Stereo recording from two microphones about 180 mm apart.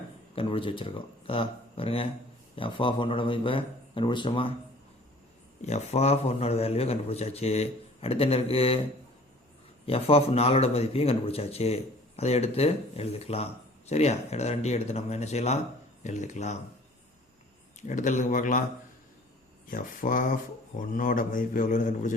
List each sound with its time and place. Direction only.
0.3 s speech: 30° left (ahead or behind)
5.6 s speech: 40° left (ahead or behind)
9.8 s speech: 35° left (ahead or behind)
17.8 s speech: 45° left (ahead or behind)
19.6 s speech: 50° left (ahead or behind)